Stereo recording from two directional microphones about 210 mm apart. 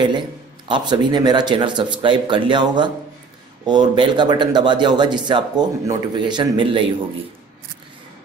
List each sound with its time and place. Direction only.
0.7 s speech: 20° right (ahead or behind)